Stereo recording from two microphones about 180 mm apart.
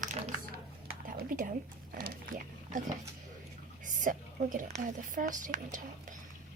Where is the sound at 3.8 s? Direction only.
45° right (ahead or behind).